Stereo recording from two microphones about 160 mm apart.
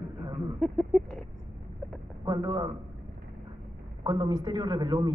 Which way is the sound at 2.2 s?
20° right (ahead or behind).